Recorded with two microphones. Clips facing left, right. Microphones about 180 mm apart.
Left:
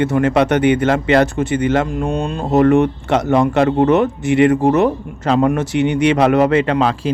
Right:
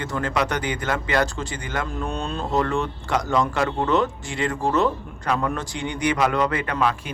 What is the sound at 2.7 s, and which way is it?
Speech, 65° left (ahead or behind).